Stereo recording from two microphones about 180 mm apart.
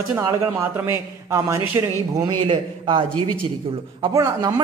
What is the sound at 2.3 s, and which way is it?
A man's voice, 25° right (ahead or behind).